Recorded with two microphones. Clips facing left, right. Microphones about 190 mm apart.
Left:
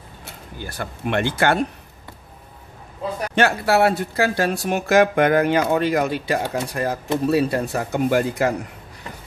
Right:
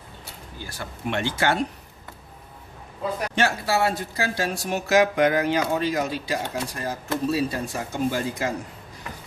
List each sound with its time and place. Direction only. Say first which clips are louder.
0.6 s speech: left 6 dB; 60° left (ahead or behind)
3.3 s speech: left 7 dB; 60° left (ahead or behind)